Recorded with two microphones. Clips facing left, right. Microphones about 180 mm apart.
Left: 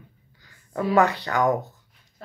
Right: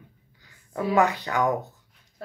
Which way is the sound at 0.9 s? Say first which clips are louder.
Left 2 dB; 15° right (ahead or behind).